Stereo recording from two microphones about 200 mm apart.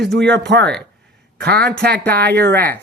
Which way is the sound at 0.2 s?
60° right (ahead or behind).